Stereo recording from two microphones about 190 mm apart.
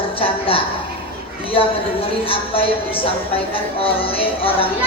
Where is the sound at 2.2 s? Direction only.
30° left (ahead or behind).